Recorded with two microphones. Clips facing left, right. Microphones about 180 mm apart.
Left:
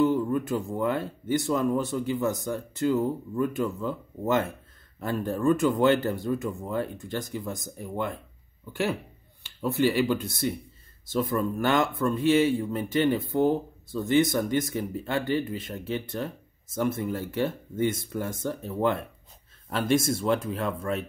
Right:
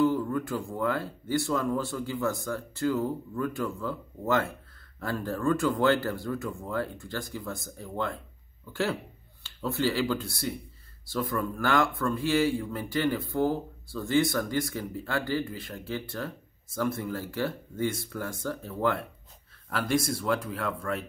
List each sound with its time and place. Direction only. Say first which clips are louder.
0.0 s speech: left 2 dB; 20° left (ahead or behind)
9.4 s speech: left 4 dB; 15° left (ahead or behind)